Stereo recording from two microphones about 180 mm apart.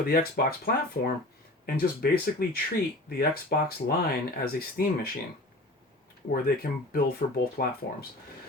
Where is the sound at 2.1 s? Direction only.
55° left (ahead or behind).